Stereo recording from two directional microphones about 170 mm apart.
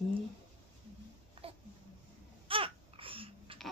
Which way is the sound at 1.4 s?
35° right (ahead or behind).